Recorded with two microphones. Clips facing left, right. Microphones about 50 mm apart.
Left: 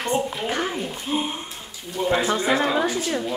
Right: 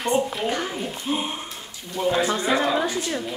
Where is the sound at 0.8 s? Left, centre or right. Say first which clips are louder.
Left 1 dB; centre.